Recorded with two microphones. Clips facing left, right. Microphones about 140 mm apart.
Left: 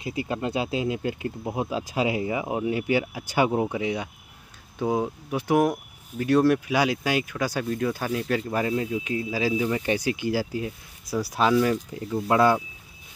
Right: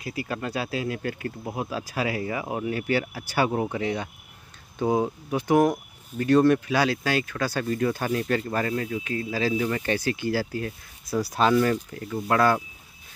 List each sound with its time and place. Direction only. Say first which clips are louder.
0.0 s speech: left 3 dB; 20° left (ahead or behind)
4.7 s speech: right 2 dB; centre (ahead or behind)
7.6 s speech: right 1 dB; centre (ahead or behind)
11.9 s speech: left 2 dB; 15° left (ahead or behind)